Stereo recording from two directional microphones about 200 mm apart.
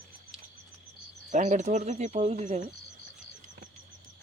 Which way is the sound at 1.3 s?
35° right (ahead or behind).